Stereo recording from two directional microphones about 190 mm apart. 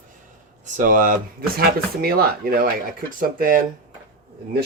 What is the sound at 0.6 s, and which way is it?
Speech, 40° right (ahead or behind).